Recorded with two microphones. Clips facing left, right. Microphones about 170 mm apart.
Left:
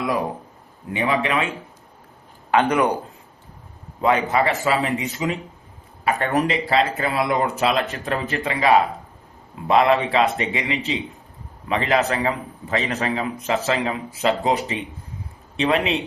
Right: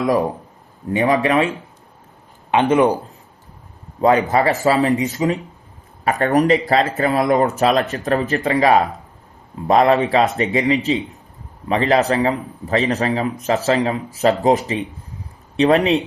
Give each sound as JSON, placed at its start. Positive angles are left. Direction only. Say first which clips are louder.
{"t": 0.9, "sound": "a man's voice", "louder": "right 5 dB", "side_deg": -40}
{"t": 2.5, "sound": "speech", "louder": "right 4 dB", "side_deg": -25}
{"t": 4.0, "sound": "a man's voice", "louder": "right 4 dB", "side_deg": -35}